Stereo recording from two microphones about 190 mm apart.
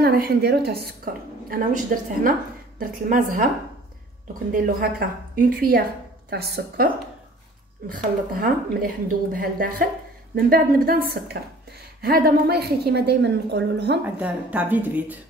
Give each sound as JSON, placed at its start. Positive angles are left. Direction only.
{"t": 0.0, "sound": "a woman's voice", "side_deg": -55}
{"t": 2.8, "sound": "a woman's voice", "side_deg": -45}
{"t": 4.5, "sound": "a woman's voice", "side_deg": -50}
{"t": 7.9, "sound": "a woman's voice", "side_deg": -45}
{"t": 14.0, "sound": "speech", "side_deg": -5}